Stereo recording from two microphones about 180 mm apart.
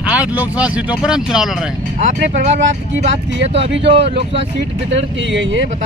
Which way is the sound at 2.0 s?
40° right (ahead or behind).